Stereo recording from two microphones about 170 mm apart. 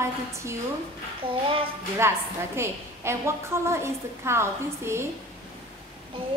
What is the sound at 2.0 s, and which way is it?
A woman's voice, 15° right (ahead or behind).